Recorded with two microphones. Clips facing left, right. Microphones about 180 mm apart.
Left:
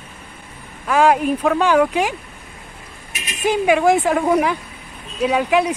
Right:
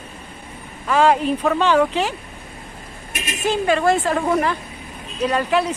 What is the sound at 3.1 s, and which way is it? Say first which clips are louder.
Speech: right 5 dB; 50° right (ahead or behind).